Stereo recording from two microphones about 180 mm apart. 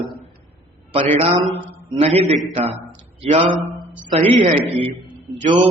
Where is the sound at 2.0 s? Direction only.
35° right (ahead or behind).